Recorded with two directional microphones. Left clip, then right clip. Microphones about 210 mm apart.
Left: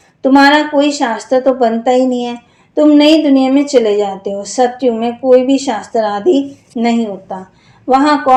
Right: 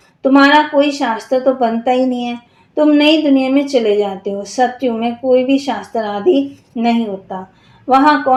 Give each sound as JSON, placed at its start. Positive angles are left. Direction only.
{"t": 0.2, "sound": "a woman's voice", "side_deg": 20}